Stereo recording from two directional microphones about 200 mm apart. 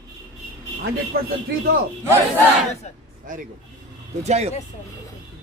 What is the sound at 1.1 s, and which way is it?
Speech, 50° right (ahead or behind).